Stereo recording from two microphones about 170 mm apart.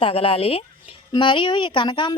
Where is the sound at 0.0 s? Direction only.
35° left (ahead or behind).